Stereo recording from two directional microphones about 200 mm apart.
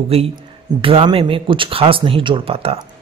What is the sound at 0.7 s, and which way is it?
Speech, 25° right (ahead or behind).